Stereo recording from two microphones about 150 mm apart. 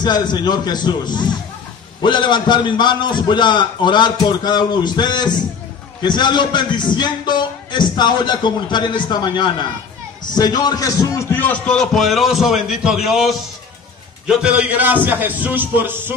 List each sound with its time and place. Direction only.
0.0 s a man's voice: 30° left (ahead or behind); by 16.2 s 15° right (ahead or behind)